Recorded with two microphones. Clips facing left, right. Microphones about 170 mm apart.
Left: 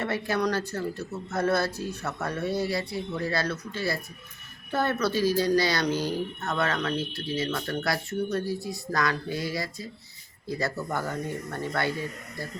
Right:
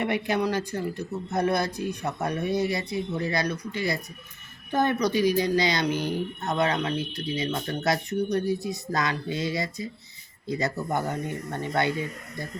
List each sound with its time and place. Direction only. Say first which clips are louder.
0.0 s speech: right 2 dB; 15° right (ahead or behind)